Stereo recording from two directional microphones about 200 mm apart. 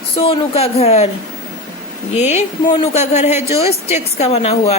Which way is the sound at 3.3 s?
15° right (ahead or behind).